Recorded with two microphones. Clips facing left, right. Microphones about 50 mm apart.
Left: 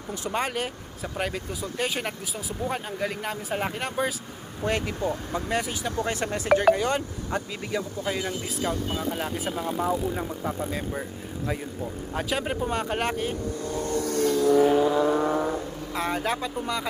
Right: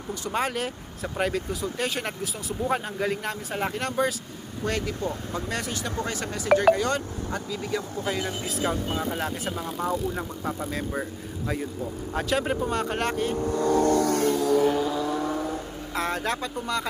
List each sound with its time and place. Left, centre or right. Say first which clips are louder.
0.3 s speech: right 1 dB; centre
6.1 s speech: left 3 dB; left
6.6 s speech: even; centre
8.6 s speech: right 1 dB; centre
9.2 s speech: left 1 dB; centre
13.5 s vehicle: right 7 dB; right
14.4 s vehicle: left 3 dB; centre; by 15.4 s left
16.0 s speech: even; centre